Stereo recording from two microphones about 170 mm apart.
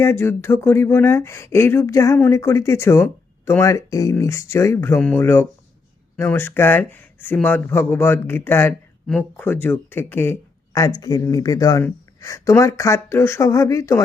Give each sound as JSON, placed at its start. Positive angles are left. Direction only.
{"t": 0.0, "sound": "speech", "side_deg": 15}